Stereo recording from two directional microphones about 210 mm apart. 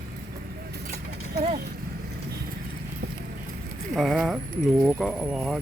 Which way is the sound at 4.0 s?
Centre (ahead or behind).